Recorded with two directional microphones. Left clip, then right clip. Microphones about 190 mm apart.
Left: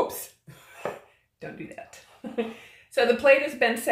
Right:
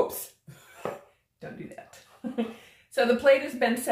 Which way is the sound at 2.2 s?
20° left (ahead or behind).